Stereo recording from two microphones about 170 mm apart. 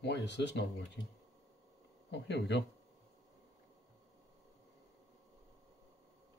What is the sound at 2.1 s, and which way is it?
Speech, 90° left.